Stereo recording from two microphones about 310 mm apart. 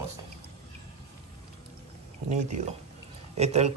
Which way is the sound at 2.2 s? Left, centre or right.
Right.